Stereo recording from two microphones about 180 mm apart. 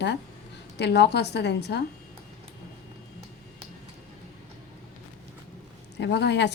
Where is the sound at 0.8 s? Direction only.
70° left (ahead or behind).